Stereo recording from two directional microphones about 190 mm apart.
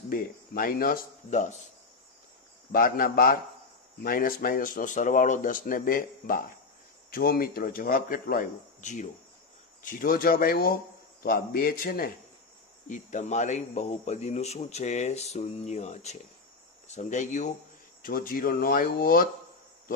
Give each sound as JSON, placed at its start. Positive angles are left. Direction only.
{"t": 0.1, "sound": "speech", "side_deg": 50}
{"t": 2.7, "sound": "speech", "side_deg": 50}